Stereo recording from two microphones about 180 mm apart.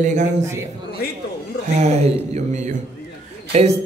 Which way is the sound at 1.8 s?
40° right (ahead or behind).